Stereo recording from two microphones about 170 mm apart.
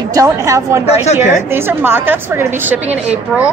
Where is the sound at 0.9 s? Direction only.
40° left (ahead or behind).